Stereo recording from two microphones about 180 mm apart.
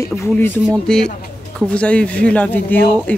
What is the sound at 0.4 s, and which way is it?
Speech, 5° left (ahead or behind).